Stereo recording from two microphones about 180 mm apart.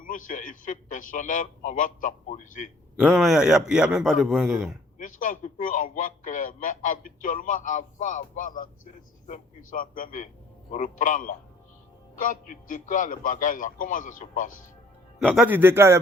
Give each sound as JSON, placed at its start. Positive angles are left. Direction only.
{"t": 0.0, "sound": "a man's voice", "side_deg": 50}
{"t": 3.0, "sound": "a man's voice", "side_deg": 0}
{"t": 4.9, "sound": "a man's voice", "side_deg": 45}
{"t": 15.2, "sound": "a man's voice", "side_deg": 5}
{"t": 15.4, "sound": "a man's voice", "side_deg": -10}